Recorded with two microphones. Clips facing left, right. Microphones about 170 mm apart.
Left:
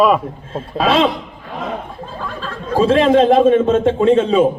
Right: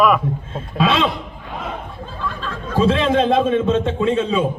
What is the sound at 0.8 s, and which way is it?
Speech, 40° left (ahead or behind).